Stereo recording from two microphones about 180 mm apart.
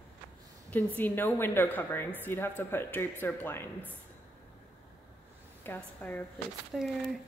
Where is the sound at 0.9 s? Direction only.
10° left (ahead or behind).